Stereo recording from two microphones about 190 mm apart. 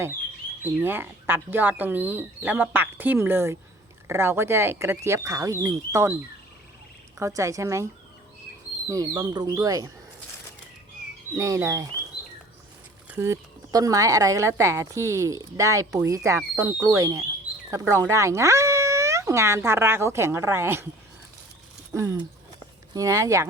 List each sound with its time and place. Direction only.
0.6 s speech: 10° right (ahead or behind)
7.2 s speech: 15° right (ahead or behind)
8.9 s speech: 20° right (ahead or behind)
11.3 s speech: 15° right (ahead or behind)
13.1 s speech: 15° right (ahead or behind)
21.9 s speech: 15° right (ahead or behind)